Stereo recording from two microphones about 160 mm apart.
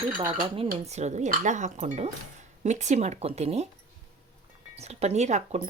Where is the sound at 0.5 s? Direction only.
40° right (ahead or behind).